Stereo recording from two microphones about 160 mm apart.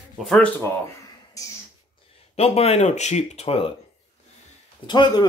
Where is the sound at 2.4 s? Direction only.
40° left (ahead or behind).